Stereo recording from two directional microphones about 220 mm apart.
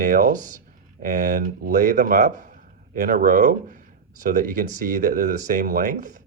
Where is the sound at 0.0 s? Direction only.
40° right (ahead or behind).